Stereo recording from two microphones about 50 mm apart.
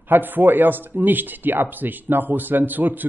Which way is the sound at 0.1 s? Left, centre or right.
Right.